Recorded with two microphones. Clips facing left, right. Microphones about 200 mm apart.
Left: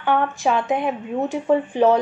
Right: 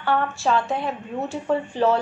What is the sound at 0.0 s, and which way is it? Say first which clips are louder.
A woman's voice: left 3 dB; 15° left (ahead or behind).